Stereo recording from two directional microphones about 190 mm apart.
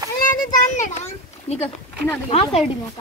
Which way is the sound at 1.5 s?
35° left (ahead or behind).